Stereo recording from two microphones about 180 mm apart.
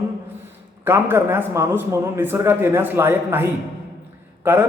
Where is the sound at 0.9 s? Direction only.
15° right (ahead or behind).